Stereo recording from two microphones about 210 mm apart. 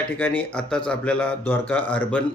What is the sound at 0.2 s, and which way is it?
Speech, 5° left (ahead or behind).